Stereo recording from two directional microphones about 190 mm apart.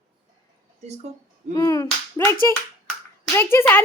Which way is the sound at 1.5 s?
15° left (ahead or behind).